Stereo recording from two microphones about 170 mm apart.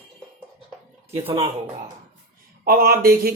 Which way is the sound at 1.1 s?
35° right (ahead or behind).